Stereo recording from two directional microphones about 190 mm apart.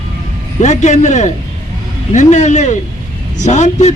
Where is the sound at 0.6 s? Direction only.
40° left (ahead or behind).